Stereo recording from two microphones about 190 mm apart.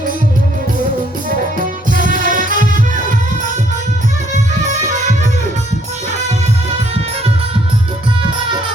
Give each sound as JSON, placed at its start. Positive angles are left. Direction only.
{"t": 1.9, "sound": "music", "side_deg": -45}